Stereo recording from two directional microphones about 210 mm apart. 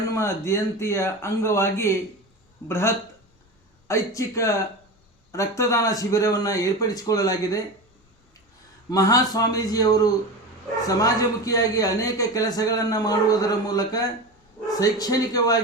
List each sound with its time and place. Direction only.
0.1 s a man's voice: 15° left (ahead or behind)
8.9 s a man's voice: 15° left (ahead or behind)